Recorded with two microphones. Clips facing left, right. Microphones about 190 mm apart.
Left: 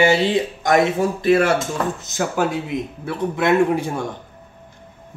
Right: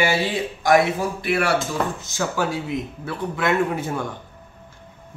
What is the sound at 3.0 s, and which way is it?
Speech, 20° left (ahead or behind).